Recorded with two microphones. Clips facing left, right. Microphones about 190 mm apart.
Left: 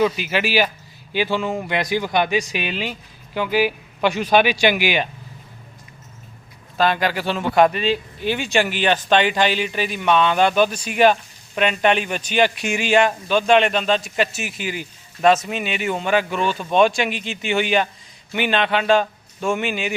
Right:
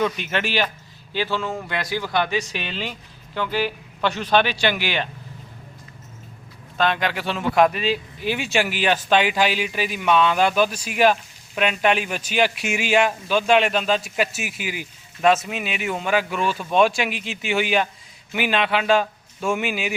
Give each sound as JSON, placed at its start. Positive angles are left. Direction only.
{"t": 0.0, "sound": "speech", "side_deg": 5}
{"t": 6.7, "sound": "speech", "side_deg": 5}